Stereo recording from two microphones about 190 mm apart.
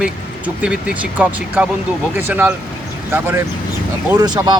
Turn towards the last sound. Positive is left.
turn(degrees=-25)  # may be behind; listen again after turning